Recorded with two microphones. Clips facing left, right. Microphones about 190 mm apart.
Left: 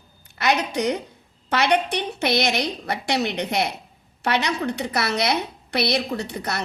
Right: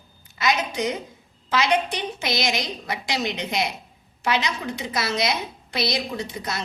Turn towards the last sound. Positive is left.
turn(degrees=65)  # may be behind; listen again after turning